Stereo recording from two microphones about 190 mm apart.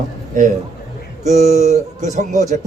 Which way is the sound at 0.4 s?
45° right (ahead or behind).